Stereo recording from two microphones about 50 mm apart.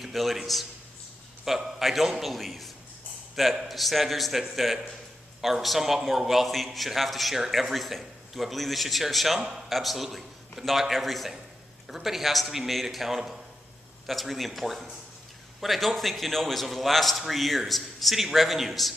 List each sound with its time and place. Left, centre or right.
0.0 s a man's voice: centre